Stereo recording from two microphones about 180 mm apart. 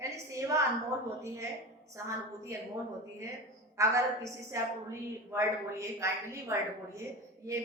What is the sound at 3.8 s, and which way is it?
A woman's voice, 15° right (ahead or behind).